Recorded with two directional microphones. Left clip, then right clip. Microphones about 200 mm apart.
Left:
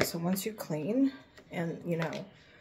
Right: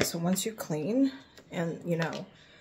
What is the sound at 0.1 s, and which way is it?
Speech, 15° right (ahead or behind).